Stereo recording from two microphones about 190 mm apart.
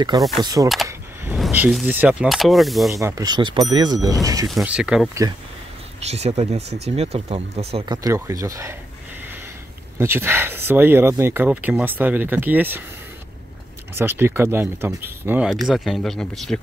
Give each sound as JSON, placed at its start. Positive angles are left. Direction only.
{"t": 0.4, "sound": "speech", "side_deg": -20}
{"t": 1.3, "sound": "speech", "side_deg": -5}
{"t": 2.9, "sound": "speech", "side_deg": -15}
{"t": 4.5, "sound": "speech", "side_deg": 0}
{"t": 6.0, "sound": "speech", "side_deg": -35}
{"t": 9.9, "sound": "speech", "side_deg": -10}
{"t": 13.9, "sound": "speech", "side_deg": -10}